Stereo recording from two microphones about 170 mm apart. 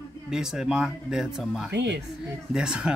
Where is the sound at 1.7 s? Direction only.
85° right.